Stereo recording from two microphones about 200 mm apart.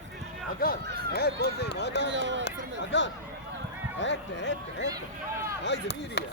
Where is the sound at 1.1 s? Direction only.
55° left (ahead or behind).